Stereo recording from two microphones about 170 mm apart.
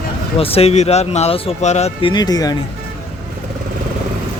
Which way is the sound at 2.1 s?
25° left (ahead or behind).